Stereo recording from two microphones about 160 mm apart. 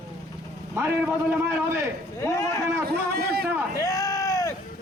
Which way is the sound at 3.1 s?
75° right (ahead or behind).